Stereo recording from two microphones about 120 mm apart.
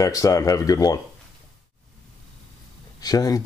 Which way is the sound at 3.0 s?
30° left (ahead or behind).